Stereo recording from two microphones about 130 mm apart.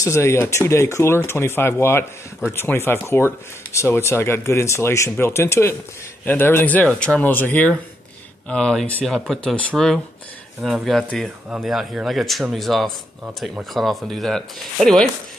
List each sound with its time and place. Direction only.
0.0 s speech: 20° left (ahead or behind); by 15.0 s 5° left (ahead or behind)